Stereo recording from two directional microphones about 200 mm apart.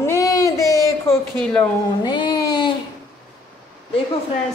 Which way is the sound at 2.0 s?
20° left (ahead or behind).